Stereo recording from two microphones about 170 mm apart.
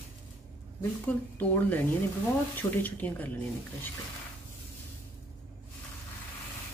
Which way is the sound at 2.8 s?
10° left (ahead or behind).